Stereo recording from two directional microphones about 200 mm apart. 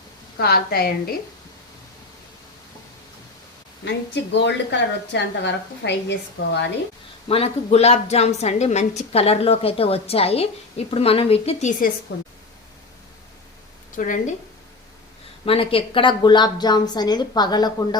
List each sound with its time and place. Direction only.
0.3 s a woman's voice: 50° left (ahead or behind)
3.8 s a woman's voice: 60° left (ahead or behind)
7.3 s a woman's voice: 30° left (ahead or behind)
12.1 s speech: 60° left (ahead or behind)
13.9 s a woman's voice: 40° left (ahead or behind)
15.4 s a woman's voice: 25° left (ahead or behind)